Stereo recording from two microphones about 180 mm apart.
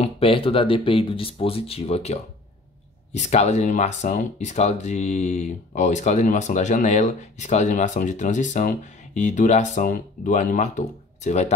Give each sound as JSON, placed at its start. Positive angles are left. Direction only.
{"t": 0.0, "sound": "speech", "side_deg": 30}